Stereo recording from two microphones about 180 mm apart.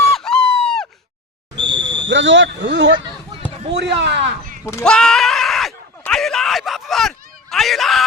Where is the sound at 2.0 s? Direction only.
90° right; by 4.2 s 70° right (ahead or behind).